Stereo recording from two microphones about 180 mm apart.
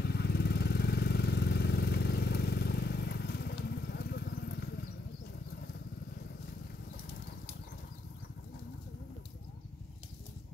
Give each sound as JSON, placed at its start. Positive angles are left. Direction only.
{"t": 0.0, "sound": "vehicle", "side_deg": 65}